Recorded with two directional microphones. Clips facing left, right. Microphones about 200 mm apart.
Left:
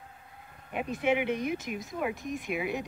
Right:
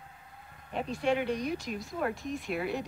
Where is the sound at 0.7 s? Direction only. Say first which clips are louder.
Left 1 dB; 15° left (ahead or behind).